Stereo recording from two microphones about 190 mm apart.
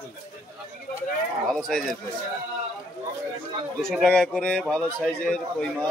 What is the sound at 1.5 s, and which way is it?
Speech, centre (ahead or behind).